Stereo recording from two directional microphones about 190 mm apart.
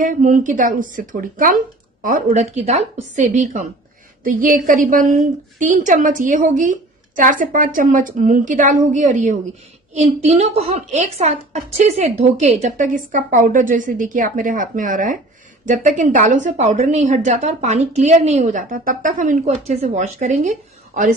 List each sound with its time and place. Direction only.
0.0 s a woman's voice: 45° right (ahead or behind)